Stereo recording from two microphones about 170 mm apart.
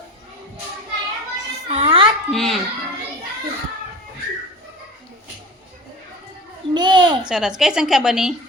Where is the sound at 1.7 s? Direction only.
35° right (ahead or behind).